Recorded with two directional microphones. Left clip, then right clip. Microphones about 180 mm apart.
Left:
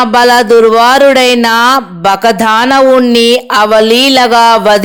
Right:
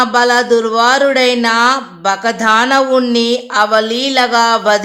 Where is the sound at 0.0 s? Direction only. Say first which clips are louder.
Left 5 dB; 40° left (ahead or behind).